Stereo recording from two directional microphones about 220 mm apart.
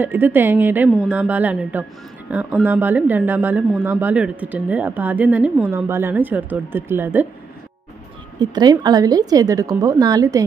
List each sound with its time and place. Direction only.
0.0 s speech: 10° right (ahead or behind)
8.4 s speech: 20° right (ahead or behind)